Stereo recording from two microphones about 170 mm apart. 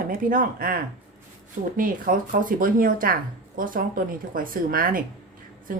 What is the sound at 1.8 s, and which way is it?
A woman's voice, 55° right (ahead or behind).